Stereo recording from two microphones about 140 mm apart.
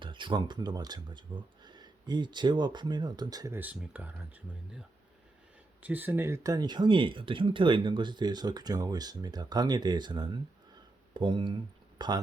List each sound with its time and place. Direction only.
0.0 s speech: 35° right (ahead or behind)
3.6 s speech: 10° right (ahead or behind)
5.8 s speech: 10° right (ahead or behind); by 12.2 s 30° right (ahead or behind)